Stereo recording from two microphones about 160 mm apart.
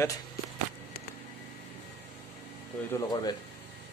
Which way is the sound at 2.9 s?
25° left (ahead or behind).